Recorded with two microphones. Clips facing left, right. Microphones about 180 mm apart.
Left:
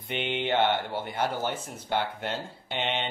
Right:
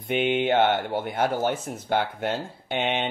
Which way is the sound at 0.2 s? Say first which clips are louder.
Right 5 dB; 50° right (ahead or behind).